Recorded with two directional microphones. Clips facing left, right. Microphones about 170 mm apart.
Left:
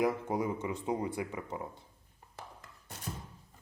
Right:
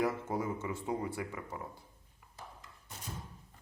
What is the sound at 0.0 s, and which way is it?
Speech, 15° left (ahead or behind).